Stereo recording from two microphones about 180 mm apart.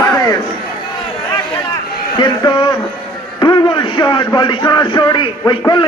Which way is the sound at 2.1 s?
25° left (ahead or behind).